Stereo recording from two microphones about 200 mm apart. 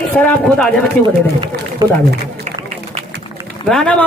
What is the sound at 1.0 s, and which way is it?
Speech, 45° left (ahead or behind).